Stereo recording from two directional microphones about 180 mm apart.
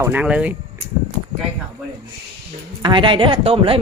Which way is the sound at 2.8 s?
25° right (ahead or behind).